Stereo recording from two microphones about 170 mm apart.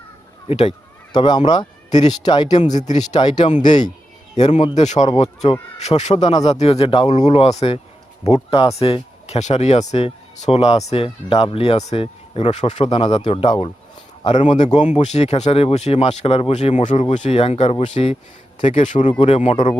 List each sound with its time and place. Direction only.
0.4 s speech: 35° left (ahead or behind)
3.5 s a man's voice: 45° left (ahead or behind)
5.0 s speech: 35° left (ahead or behind)
14.3 s a man's voice: 45° left (ahead or behind)